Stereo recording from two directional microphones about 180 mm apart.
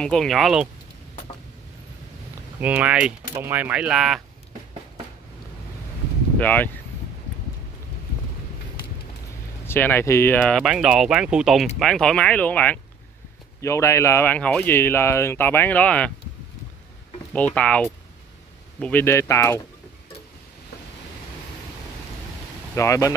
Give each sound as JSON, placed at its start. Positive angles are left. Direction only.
{"t": 0.0, "sound": "speech", "side_deg": 5}
{"t": 2.6, "sound": "speech", "side_deg": -10}
{"t": 6.4, "sound": "speech", "side_deg": 10}
{"t": 9.7, "sound": "speech", "side_deg": 10}
{"t": 17.3, "sound": "speech", "side_deg": 10}
{"t": 22.8, "sound": "speech", "side_deg": 15}